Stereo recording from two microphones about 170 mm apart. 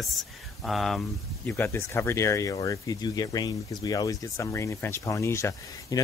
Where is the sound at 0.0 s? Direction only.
Centre (ahead or behind).